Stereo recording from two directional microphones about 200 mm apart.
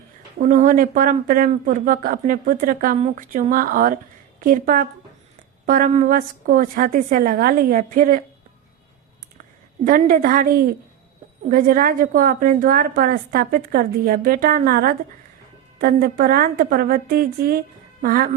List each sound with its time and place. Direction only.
0.3 s speech: 40° right (ahead or behind)
9.8 s speech: 45° right (ahead or behind)